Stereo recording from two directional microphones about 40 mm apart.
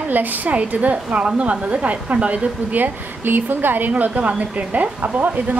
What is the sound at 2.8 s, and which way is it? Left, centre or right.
A woman's voice, right.